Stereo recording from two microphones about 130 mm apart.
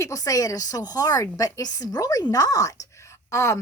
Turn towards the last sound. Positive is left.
turn(degrees=20)  # may be behind; listen again after turning